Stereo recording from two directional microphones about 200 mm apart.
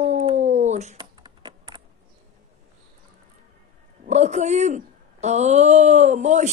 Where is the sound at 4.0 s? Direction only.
35° right (ahead or behind).